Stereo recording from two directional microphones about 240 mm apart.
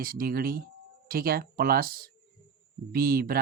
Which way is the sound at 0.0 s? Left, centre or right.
Right.